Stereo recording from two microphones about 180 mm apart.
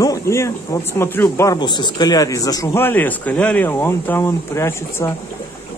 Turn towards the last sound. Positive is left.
turn(degrees=15)  # may be behind; listen again after turning